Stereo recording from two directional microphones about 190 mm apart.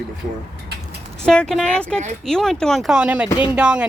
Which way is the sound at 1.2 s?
5° left (ahead or behind).